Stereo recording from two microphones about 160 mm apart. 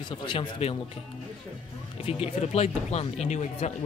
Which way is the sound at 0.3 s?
35° left (ahead or behind).